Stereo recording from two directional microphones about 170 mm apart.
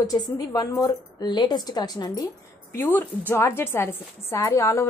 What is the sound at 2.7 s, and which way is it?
A woman's voice, 10° left (ahead or behind).